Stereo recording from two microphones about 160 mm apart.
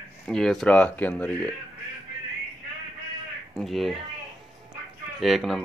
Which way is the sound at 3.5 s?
Centre (ahead or behind).